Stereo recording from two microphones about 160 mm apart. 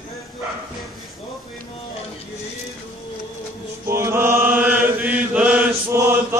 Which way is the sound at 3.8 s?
15° right (ahead or behind).